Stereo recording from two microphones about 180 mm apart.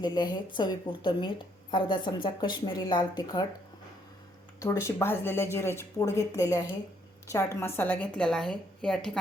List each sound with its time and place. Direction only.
0.0 s a woman's voice: 25° left (ahead or behind)
4.6 s speech: 15° left (ahead or behind)